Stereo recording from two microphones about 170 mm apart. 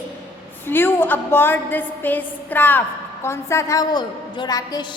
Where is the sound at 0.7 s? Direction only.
10° left (ahead or behind).